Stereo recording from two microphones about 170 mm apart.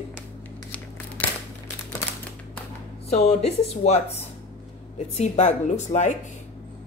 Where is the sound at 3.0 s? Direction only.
40° left (ahead or behind).